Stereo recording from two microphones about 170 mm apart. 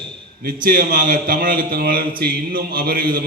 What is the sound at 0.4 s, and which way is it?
A man's voice, 55° right (ahead or behind).